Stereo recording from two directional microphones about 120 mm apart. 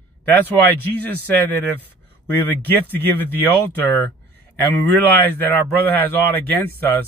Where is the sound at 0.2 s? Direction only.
15° left (ahead or behind).